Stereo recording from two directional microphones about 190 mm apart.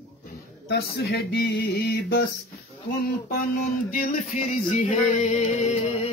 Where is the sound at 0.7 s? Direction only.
55° left (ahead or behind).